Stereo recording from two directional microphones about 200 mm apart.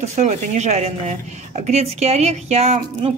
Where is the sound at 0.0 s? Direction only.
35° right (ahead or behind).